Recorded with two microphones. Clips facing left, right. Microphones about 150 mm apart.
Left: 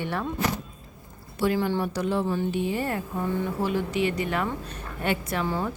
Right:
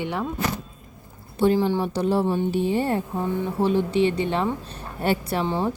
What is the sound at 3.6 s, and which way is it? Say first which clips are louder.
A woman's voice: right 7 dB; 30° right (ahead or behind).